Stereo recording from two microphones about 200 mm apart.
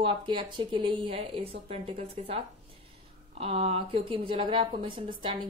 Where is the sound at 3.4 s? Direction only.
30° right (ahead or behind).